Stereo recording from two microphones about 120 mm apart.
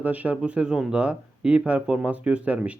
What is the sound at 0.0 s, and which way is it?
A man's voice, 15° right (ahead or behind).